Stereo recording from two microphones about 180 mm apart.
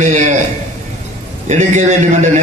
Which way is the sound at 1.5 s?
40° right (ahead or behind).